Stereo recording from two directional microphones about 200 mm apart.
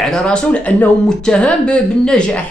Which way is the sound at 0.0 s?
5° left (ahead or behind).